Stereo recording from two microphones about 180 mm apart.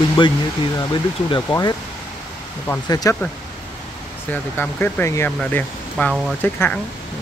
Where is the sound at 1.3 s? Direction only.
20° left (ahead or behind).